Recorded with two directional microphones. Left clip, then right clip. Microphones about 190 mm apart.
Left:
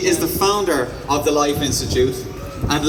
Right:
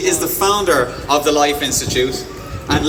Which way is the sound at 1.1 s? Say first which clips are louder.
Right 3 dB; 40° left (ahead or behind).